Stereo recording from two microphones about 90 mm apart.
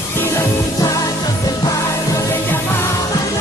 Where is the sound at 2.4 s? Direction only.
25° left (ahead or behind).